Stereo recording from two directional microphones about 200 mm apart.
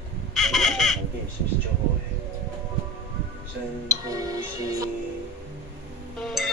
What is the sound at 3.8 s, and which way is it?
Music, 20° right (ahead or behind).